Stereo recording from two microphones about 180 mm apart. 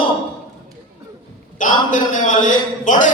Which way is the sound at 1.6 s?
45° left (ahead or behind).